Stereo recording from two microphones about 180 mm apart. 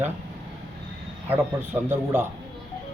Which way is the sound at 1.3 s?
10° right (ahead or behind).